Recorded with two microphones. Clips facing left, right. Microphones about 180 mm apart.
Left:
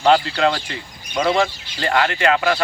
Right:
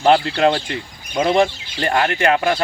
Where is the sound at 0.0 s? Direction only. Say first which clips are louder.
Right 2 dB; 20° right (ahead or behind).